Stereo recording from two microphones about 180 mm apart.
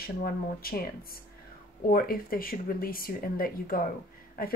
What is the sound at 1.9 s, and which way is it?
Speech, 55° left (ahead or behind).